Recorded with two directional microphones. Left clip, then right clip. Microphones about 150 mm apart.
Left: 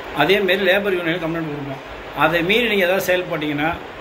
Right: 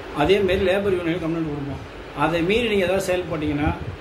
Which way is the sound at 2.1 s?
15° right (ahead or behind).